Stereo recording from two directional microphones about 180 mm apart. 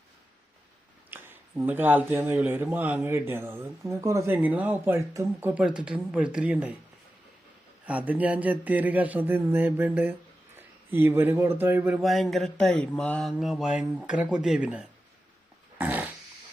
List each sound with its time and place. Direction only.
1.1 s speech: 10° right (ahead or behind)
7.9 s speech: 10° right (ahead or behind)
15.8 s dog: 10° right (ahead or behind)